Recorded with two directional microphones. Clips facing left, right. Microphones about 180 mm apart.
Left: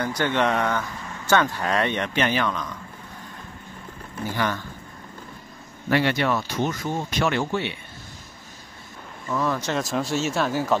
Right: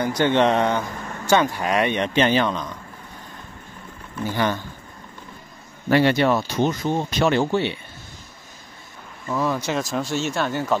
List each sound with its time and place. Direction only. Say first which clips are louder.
0.0 s speech: right 4 dB; 25° right (ahead or behind)
5.9 s speech: right 4 dB; 30° right (ahead or behind)
9.3 s speech: right 2 dB; 10° right (ahead or behind)